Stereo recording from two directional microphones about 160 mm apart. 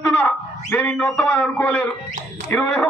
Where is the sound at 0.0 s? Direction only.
10° left (ahead or behind).